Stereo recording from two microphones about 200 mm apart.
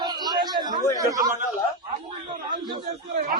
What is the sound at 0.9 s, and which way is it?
Speech, 15° right (ahead or behind).